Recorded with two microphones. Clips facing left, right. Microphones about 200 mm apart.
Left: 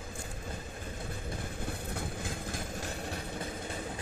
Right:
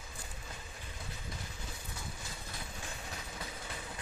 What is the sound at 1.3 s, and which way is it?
Vehicle, 55° left (ahead or behind).